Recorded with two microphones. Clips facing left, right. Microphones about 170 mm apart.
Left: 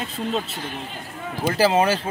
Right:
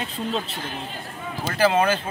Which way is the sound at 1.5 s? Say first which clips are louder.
Left 1 dB; 30° left (ahead or behind).